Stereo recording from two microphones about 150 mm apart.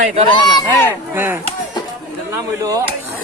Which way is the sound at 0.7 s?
15° left (ahead or behind).